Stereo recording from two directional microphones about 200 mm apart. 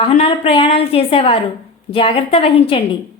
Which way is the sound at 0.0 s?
30° left (ahead or behind).